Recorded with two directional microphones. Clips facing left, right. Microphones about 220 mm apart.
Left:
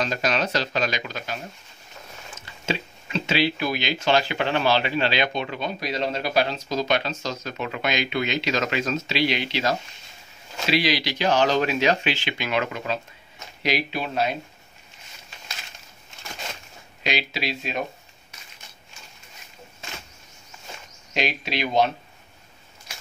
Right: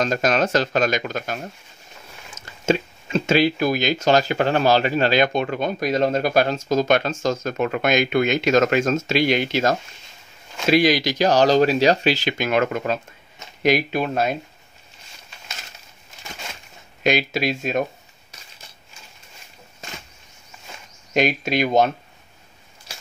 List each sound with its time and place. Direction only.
0.0 s speech: 45° right (ahead or behind)
17.0 s speech: 50° right (ahead or behind)
21.1 s speech: 45° right (ahead or behind)